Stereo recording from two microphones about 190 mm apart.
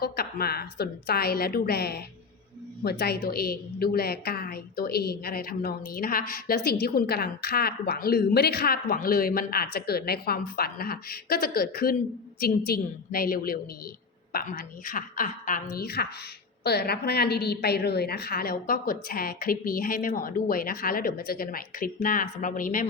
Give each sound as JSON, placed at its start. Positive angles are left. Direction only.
{"t": 0.0, "sound": "a woman's voice", "side_deg": 55}